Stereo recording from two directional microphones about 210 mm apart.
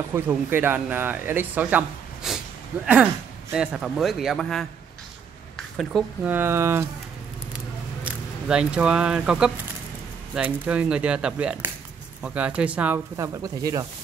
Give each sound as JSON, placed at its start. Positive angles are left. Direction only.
{"t": 0.1, "sound": "speech", "side_deg": -10}
{"t": 5.8, "sound": "speech", "side_deg": -5}
{"t": 8.0, "sound": "speech", "side_deg": -5}